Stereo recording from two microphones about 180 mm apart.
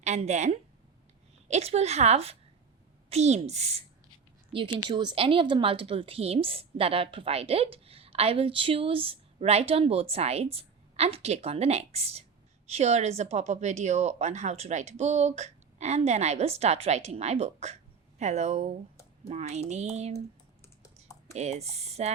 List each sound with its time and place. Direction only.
0.0 s a woman's voice: 40° right (ahead or behind)
21.3 s a woman's voice: 35° right (ahead or behind)